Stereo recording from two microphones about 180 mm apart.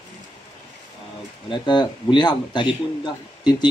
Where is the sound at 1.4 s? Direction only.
25° left (ahead or behind).